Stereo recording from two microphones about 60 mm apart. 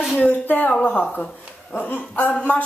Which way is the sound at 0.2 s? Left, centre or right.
Left.